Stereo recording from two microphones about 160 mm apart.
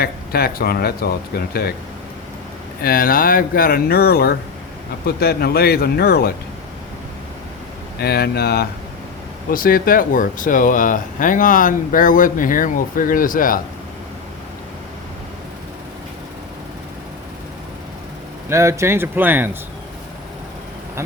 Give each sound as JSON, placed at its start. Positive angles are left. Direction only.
{"t": 0.0, "sound": "speech", "side_deg": 70}
{"t": 2.8, "sound": "speech", "side_deg": 65}
{"t": 7.9, "sound": "speech", "side_deg": 75}
{"t": 9.5, "sound": "speech", "side_deg": 65}
{"t": 18.4, "sound": "speech", "side_deg": -15}